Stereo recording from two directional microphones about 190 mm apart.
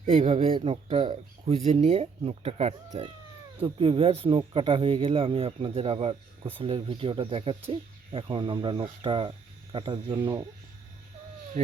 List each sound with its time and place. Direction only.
0.1 s speech: 30° right (ahead or behind)
11.6 s speech: 40° right (ahead or behind)